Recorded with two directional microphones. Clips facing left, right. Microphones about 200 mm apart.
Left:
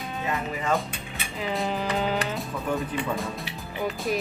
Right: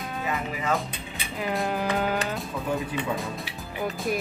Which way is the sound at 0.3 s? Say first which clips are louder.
Left 1 dB; centre (ahead or behind).